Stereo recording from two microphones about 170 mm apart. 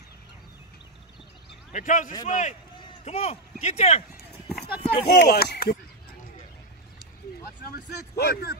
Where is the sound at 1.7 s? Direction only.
45° left (ahead or behind).